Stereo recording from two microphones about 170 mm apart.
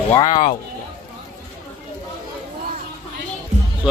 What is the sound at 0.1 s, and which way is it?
Speech, 25° left (ahead or behind).